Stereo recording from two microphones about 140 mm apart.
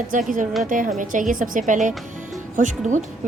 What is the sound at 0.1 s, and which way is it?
A woman's voice, 70° right (ahead or behind).